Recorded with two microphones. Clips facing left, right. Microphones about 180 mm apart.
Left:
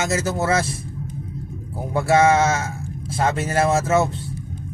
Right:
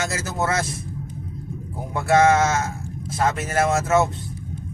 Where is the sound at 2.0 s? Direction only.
30° left (ahead or behind).